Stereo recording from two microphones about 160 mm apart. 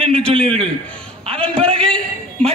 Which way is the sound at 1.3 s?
5° left (ahead or behind).